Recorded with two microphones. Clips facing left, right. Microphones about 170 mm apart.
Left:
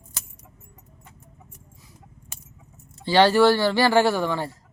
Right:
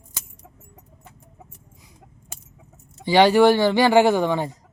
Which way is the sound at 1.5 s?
15° right (ahead or behind).